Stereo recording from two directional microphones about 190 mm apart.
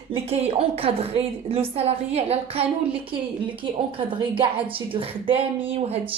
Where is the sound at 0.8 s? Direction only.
30° right (ahead or behind).